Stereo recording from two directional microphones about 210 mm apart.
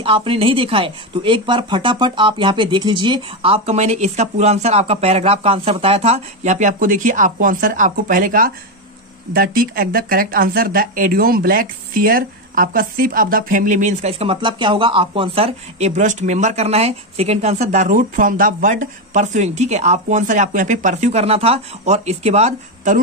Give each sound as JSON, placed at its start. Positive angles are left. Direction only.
{"t": 0.0, "sound": "speech", "side_deg": -25}